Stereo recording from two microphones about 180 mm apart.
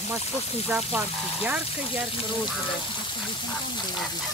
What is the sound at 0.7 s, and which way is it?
Speech, 10° right (ahead or behind).